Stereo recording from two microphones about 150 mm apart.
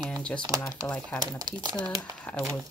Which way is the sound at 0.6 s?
20° left (ahead or behind).